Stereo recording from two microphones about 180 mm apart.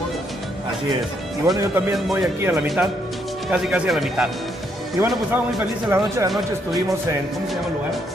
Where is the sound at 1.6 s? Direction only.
15° right (ahead or behind).